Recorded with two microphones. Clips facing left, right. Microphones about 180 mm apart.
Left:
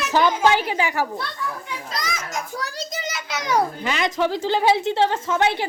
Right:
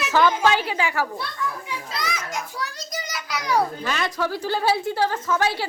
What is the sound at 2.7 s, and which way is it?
A woman's voice, 25° left (ahead or behind).